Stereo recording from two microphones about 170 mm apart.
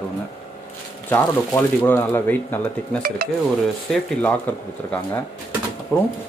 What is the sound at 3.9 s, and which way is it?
Speech, 10° left (ahead or behind).